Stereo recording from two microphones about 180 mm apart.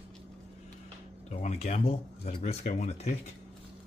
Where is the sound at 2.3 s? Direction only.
40° left (ahead or behind).